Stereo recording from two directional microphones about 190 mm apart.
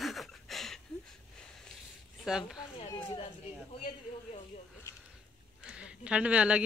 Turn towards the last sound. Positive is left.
turn(degrees=-5)  # may be behind; listen again after turning